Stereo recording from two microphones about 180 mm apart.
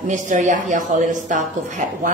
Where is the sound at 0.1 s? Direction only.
45° right (ahead or behind).